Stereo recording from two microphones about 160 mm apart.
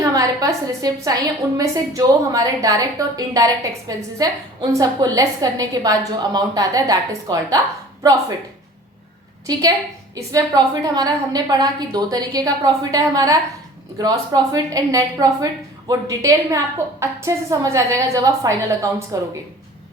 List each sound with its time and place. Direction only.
0.0 s a woman's voice: 20° right (ahead or behind)
9.5 s a woman's voice: 25° right (ahead or behind)